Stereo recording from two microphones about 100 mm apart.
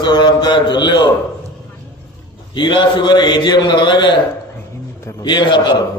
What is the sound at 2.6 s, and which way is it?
A man's voice, 50° left (ahead or behind).